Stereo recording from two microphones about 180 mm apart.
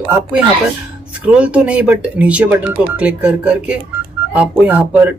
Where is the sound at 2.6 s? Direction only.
30° right (ahead or behind).